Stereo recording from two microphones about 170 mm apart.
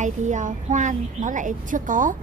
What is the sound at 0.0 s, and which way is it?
A woman's voice, 45° right (ahead or behind).